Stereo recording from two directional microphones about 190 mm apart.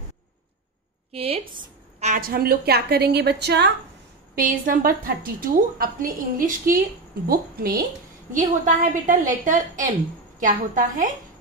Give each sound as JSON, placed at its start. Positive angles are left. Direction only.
{"t": 1.1, "sound": "a woman's voice", "side_deg": -30}
{"t": 4.4, "sound": "a woman's voice", "side_deg": -50}
{"t": 8.3, "sound": "a woman's voice", "side_deg": -45}